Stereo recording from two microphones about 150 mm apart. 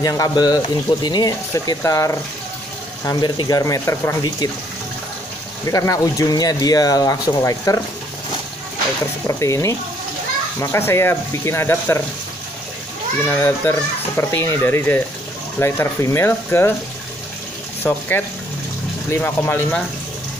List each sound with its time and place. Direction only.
0.0 s speech: 25° left (ahead or behind)
5.7 s speech: 20° left (ahead or behind)
9.3 s speech: 20° left (ahead or behind)
13.2 s speech: 15° left (ahead or behind)
17.8 s speech: 15° left (ahead or behind)